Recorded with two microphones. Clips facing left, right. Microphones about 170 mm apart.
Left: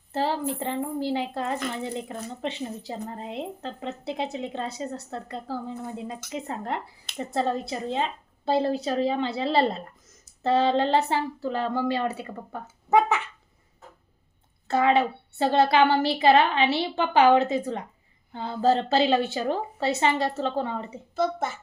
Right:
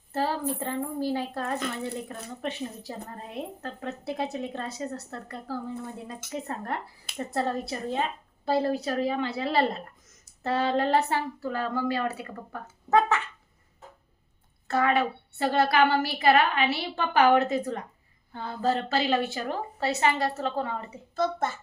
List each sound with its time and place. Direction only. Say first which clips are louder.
0.1 s a woman's voice: left 2 dB; 25° left (ahead or behind)
14.7 s speech: left 3 dB; 20° left (ahead or behind)
21.2 s a woman's voice: left 1 dB; 10° left (ahead or behind)